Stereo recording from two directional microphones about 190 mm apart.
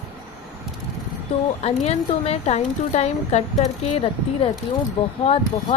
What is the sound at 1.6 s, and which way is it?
Speech, 35° left (ahead or behind).